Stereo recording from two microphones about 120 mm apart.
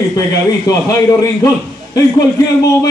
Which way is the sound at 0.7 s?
30° left (ahead or behind).